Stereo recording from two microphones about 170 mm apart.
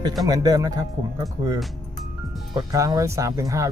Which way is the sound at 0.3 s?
20° right (ahead or behind).